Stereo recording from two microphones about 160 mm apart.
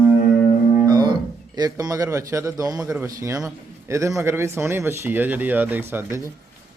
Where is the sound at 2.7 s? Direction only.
5° right (ahead or behind).